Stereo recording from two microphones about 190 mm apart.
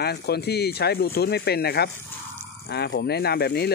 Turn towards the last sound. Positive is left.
turn(degrees=60)  # may be behind; listen again after turning